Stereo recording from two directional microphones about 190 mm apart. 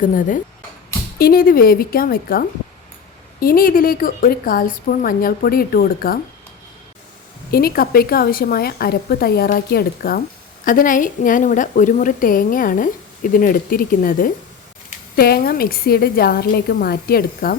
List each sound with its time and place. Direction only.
0.0 s a woman's voice: 45° left (ahead or behind)
7.5 s a woman's voice: 50° left (ahead or behind)